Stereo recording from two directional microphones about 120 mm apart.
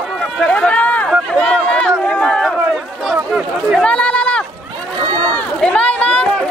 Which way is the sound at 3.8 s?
10° left (ahead or behind).